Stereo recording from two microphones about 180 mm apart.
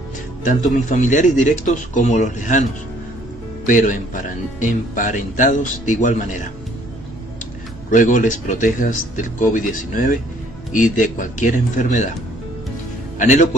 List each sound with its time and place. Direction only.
0.4 s speech: 45° left (ahead or behind)
3.6 s speech: 45° left (ahead or behind)
7.9 s speech: 45° left (ahead or behind)
13.2 s speech: 45° left (ahead or behind)